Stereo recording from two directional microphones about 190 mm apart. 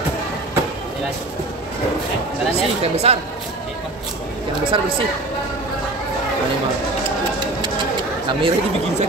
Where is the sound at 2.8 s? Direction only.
35° right (ahead or behind).